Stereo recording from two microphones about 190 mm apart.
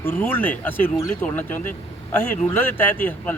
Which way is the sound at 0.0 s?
10° left (ahead or behind).